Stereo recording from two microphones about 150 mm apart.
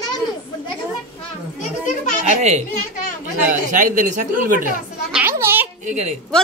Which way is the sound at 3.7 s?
60° right (ahead or behind).